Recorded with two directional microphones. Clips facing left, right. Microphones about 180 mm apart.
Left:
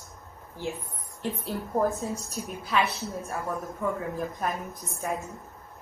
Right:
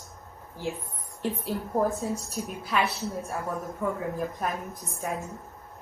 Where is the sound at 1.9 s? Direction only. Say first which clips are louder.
Right 2 dB; centre (ahead or behind).